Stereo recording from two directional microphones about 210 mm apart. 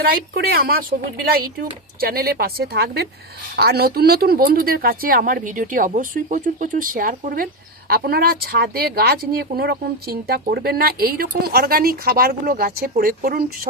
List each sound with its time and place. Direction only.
0.0 s speech: 50° right (ahead or behind)